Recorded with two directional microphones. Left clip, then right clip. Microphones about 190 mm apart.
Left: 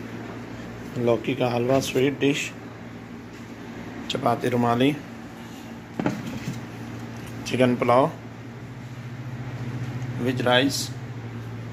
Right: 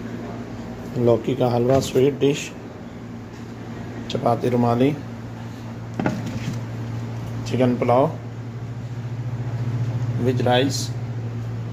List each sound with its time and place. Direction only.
1.0 s speech: 15° right (ahead or behind)
4.1 s speech: centre (ahead or behind)
7.4 s speech: 10° left (ahead or behind)
10.2 s speech: 5° right (ahead or behind)